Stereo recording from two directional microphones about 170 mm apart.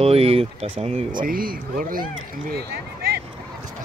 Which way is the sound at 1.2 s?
55° right (ahead or behind).